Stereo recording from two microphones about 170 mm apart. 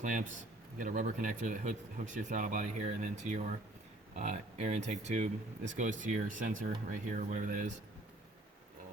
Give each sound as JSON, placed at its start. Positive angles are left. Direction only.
{"t": 0.0, "sound": "speech", "side_deg": -50}